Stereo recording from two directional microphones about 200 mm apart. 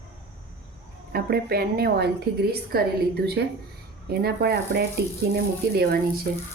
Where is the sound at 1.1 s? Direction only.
50° right (ahead or behind).